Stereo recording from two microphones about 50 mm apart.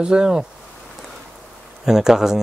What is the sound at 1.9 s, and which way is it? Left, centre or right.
Speech, centre.